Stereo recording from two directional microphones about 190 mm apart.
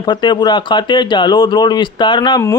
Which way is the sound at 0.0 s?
25° left (ahead or behind).